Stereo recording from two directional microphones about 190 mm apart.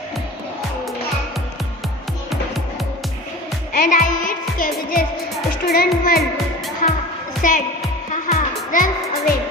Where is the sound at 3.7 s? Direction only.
45° left (ahead or behind).